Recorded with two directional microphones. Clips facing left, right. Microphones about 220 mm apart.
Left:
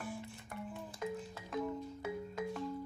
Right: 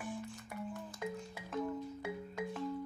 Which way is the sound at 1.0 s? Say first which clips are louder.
Left 2 dB; centre (ahead or behind).